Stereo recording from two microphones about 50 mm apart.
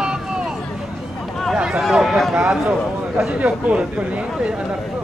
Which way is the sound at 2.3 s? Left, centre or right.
Centre.